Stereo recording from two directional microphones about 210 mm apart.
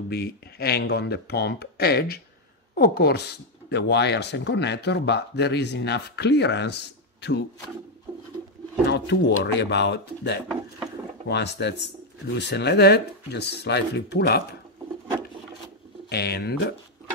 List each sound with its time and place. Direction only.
0.1 s speech: 50° left (ahead or behind)
8.8 s speech: 55° left (ahead or behind)
16.1 s speech: 50° left (ahead or behind)